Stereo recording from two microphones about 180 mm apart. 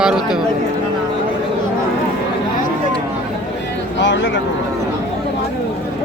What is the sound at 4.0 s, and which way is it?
Speech, 85° left.